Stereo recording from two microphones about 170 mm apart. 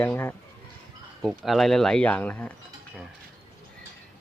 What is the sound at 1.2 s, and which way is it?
Speech, centre (ahead or behind).